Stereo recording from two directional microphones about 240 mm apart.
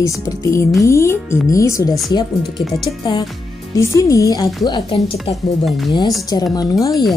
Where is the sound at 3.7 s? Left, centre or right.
Centre.